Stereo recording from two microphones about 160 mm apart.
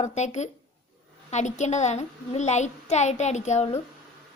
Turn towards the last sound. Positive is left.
turn(degrees=45)  # may be behind; listen again after turning